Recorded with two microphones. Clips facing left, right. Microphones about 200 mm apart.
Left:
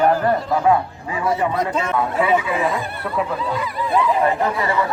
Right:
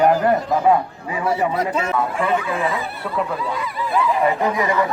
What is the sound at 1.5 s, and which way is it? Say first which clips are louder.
Speech: even; 10° right (ahead or behind).